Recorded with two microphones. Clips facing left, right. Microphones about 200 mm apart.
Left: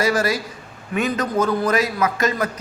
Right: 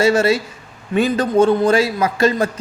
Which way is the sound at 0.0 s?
25° right (ahead or behind).